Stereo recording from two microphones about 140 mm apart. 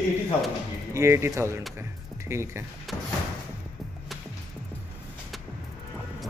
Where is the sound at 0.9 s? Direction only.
20° right (ahead or behind).